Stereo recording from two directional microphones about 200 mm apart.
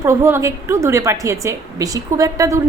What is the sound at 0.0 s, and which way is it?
A woman's voice, 15° right (ahead or behind).